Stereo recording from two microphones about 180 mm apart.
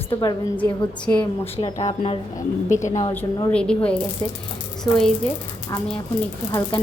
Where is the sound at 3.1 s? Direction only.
10° left (ahead or behind).